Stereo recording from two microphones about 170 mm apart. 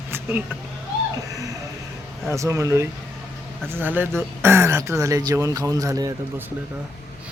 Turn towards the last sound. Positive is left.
turn(degrees=-20)  # may be behind; listen again after turning